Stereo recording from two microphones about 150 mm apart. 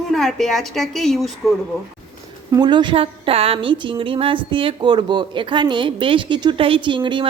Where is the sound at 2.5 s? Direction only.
30° right (ahead or behind).